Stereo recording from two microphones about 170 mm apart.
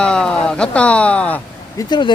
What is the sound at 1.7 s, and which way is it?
Speech, 25° left (ahead or behind).